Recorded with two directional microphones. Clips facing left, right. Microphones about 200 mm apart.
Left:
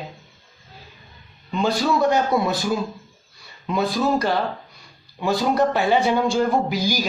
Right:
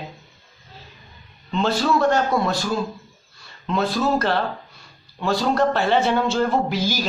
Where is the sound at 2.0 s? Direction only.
15° left (ahead or behind).